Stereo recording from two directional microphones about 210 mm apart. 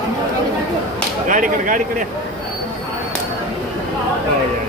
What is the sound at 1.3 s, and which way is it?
Speech, 40° right (ahead or behind).